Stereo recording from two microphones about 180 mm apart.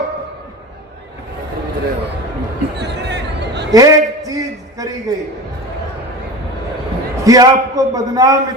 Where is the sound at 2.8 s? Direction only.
70° right (ahead or behind).